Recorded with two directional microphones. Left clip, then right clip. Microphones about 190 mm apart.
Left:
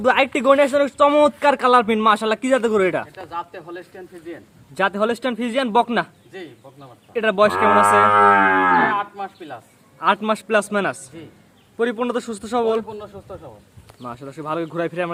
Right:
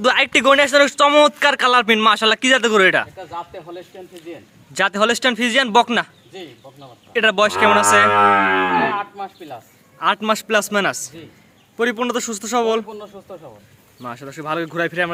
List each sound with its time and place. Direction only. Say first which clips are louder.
0.0 s speech: right 2 dB; centre (ahead or behind)
4.7 s speech: right 3 dB; centre (ahead or behind)
8.1 s a sound: even; 30° right (ahead or behind)
8.8 s speech: left 1 dB; 10° right (ahead or behind)
10.0 s speech: right 1 dB; centre (ahead or behind)